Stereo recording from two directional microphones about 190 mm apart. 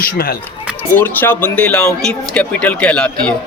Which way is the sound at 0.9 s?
10° left (ahead or behind).